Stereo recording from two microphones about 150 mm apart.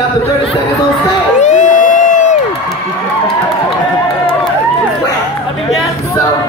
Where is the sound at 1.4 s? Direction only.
55° left (ahead or behind).